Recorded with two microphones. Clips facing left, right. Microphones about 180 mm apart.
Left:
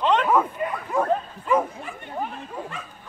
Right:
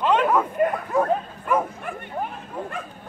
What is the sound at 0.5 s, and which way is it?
Bow-wow, 50° right (ahead or behind).